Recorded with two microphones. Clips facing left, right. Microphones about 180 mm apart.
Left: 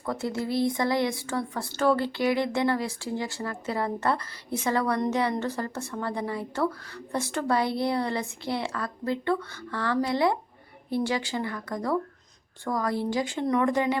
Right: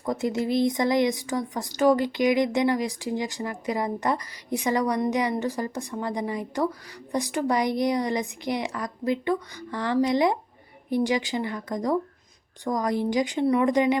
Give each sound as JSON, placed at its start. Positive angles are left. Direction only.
{"t": 0.0, "sound": "speech", "side_deg": -15}